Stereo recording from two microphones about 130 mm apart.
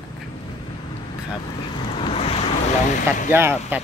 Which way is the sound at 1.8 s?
50° left (ahead or behind).